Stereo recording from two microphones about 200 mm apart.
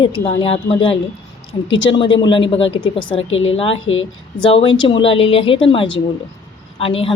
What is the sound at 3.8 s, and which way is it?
Speech, 75° left (ahead or behind).